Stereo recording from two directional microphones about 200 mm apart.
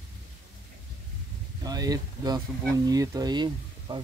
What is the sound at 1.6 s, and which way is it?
Speech, 20° right (ahead or behind).